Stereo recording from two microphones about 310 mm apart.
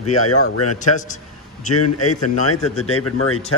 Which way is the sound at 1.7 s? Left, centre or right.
Left.